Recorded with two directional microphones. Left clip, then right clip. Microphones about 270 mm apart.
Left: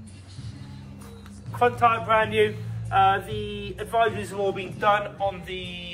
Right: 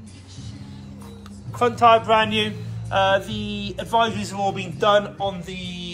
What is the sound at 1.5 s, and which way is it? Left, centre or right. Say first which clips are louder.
Speech: right 4 dB; centre.